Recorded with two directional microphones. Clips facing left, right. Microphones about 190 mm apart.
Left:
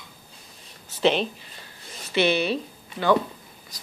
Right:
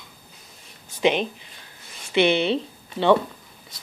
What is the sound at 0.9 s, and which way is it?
Speech, 15° right (ahead or behind).